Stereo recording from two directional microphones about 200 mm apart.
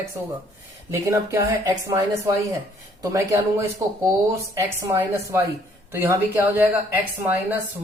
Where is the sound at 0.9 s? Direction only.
15° right (ahead or behind).